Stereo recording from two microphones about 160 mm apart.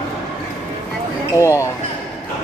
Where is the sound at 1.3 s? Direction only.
20° left (ahead or behind).